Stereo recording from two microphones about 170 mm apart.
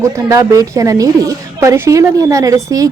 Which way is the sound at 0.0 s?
20° right (ahead or behind).